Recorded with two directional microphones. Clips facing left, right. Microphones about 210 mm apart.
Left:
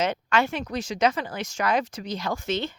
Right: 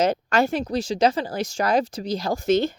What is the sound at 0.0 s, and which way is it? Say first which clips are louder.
A woman's voice: right 4 dB; 40° right (ahead or behind).